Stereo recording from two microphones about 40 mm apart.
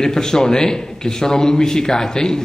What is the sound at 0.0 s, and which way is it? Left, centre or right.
A man's voice, centre.